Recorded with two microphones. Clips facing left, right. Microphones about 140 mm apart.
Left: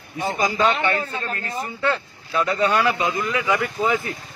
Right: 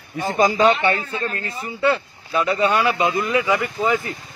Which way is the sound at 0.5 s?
35° right (ahead or behind).